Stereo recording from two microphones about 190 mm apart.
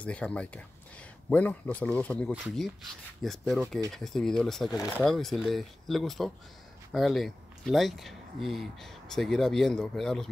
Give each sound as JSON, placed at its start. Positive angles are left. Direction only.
{"t": 0.0, "sound": "speech", "side_deg": 5}
{"t": 4.6, "sound": "speech", "side_deg": 20}
{"t": 5.0, "sound": "speech", "side_deg": 0}